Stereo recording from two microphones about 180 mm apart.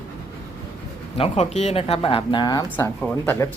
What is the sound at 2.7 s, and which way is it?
Speech, 10° left (ahead or behind).